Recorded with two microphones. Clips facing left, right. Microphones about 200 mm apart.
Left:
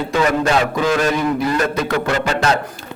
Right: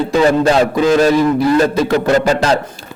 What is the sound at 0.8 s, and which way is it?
Speech, 25° right (ahead or behind).